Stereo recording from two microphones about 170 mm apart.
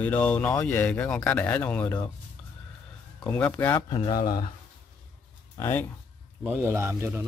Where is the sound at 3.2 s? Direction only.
10° left (ahead or behind).